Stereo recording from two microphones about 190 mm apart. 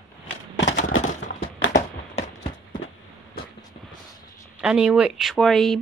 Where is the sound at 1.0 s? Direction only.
40° left (ahead or behind).